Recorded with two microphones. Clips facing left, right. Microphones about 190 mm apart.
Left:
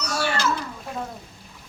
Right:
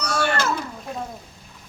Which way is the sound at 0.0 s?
55° right (ahead or behind).